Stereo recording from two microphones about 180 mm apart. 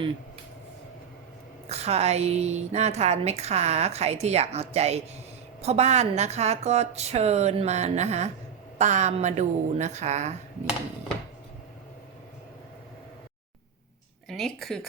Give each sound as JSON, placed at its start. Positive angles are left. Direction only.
{"t": 1.6, "sound": "a woman's voice", "side_deg": -35}
{"t": 14.3, "sound": "speech", "side_deg": 0}